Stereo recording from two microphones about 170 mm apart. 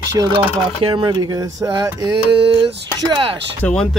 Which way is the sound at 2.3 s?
30° right (ahead or behind).